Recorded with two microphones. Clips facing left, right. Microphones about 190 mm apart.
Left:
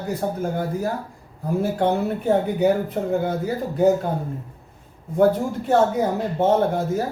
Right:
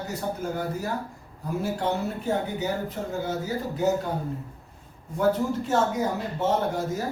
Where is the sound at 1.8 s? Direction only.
55° left (ahead or behind).